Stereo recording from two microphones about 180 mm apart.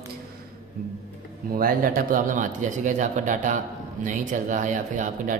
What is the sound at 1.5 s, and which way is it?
Speech, 55° right (ahead or behind).